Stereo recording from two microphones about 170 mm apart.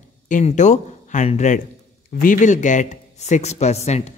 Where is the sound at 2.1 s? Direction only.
55° left (ahead or behind).